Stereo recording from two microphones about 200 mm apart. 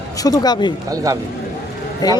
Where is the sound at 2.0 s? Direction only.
20° left (ahead or behind).